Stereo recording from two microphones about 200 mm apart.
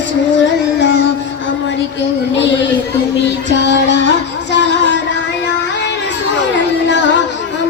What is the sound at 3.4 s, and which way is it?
Music, 65° left (ahead or behind).